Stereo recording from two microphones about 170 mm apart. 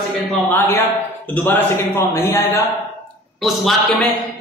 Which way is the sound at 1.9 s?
15° left (ahead or behind).